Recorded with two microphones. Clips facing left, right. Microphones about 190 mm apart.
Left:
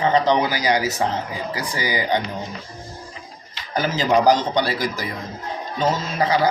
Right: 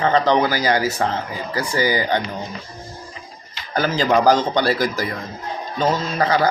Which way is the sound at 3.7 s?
20° left (ahead or behind).